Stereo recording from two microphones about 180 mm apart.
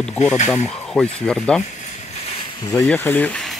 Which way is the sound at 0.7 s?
Centre (ahead or behind).